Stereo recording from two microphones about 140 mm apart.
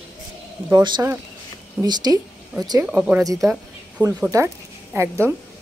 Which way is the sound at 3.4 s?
5° right (ahead or behind).